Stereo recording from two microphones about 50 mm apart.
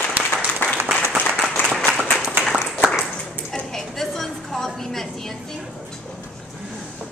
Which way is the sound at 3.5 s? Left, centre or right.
Centre.